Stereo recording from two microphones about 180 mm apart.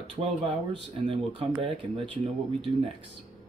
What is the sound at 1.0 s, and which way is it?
Speech, 30° right (ahead or behind).